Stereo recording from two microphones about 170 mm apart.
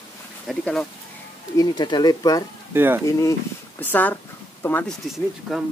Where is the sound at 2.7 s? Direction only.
15° right (ahead or behind).